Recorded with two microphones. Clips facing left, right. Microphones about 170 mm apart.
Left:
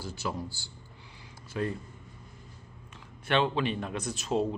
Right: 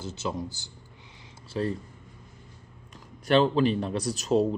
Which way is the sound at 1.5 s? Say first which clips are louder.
Right 3 dB; 30° right (ahead or behind).